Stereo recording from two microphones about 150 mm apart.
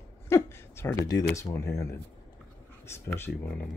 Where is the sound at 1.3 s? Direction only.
20° left (ahead or behind).